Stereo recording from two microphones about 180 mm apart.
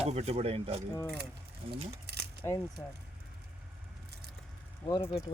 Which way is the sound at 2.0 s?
65° right (ahead or behind).